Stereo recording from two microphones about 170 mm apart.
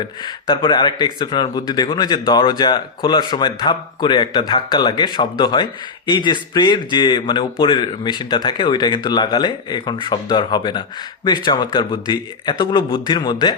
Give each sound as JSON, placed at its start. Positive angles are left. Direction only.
{"t": 0.0, "sound": "speech", "side_deg": 25}